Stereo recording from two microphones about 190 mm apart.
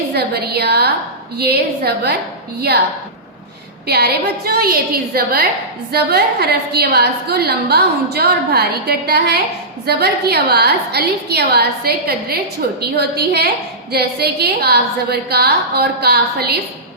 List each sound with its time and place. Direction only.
0.1 s a woman's voice: 55° right (ahead or behind)
3.8 s a woman's voice: 55° right (ahead or behind)